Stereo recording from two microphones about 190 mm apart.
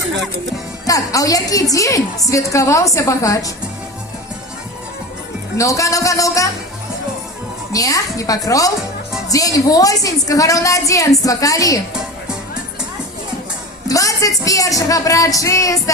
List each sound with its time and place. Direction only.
0.9 s a woman's voice: 20° left (ahead or behind)
5.5 s a woman's voice: 15° left (ahead or behind)
7.7 s a woman's voice: 20° left (ahead or behind)
13.8 s a woman's voice: 20° left (ahead or behind)